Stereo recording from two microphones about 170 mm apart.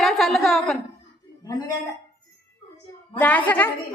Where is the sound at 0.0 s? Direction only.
Centre (ahead or behind).